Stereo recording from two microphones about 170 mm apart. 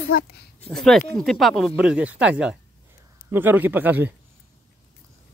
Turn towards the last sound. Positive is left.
turn(degrees=-10)  # may be behind; listen again after turning